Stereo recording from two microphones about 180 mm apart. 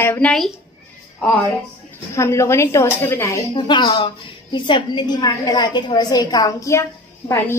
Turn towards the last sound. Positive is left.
turn(degrees=15)  # may be behind; listen again after turning